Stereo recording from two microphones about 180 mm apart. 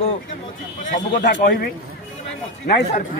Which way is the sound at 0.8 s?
45° left (ahead or behind).